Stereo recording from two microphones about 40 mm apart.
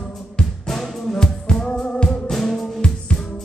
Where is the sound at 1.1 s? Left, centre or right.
Centre.